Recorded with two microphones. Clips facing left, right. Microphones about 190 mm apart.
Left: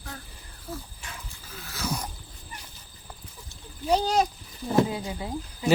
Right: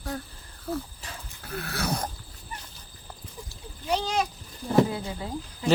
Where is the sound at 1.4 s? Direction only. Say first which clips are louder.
Right 6 dB; 65° right (ahead or behind).